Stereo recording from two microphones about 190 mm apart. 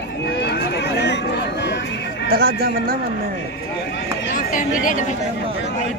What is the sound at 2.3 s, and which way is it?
Speech, 50° right (ahead or behind).